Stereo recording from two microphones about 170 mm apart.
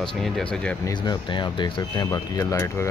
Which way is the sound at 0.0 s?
5° left (ahead or behind).